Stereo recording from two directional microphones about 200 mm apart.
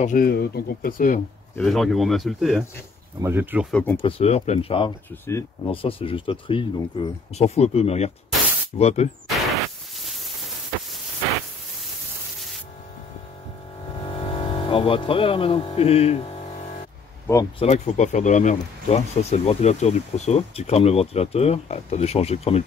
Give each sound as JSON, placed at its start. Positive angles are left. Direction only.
{"t": 0.0, "sound": "speech", "side_deg": 45}
{"t": 1.6, "sound": "speech", "side_deg": 0}
{"t": 3.2, "sound": "speech", "side_deg": -10}
{"t": 4.0, "sound": "speech", "side_deg": 30}
{"t": 9.3, "sound": "a sound", "side_deg": 0}
{"t": 14.0, "sound": "speech", "side_deg": 25}
{"t": 17.6, "sound": "speech", "side_deg": 35}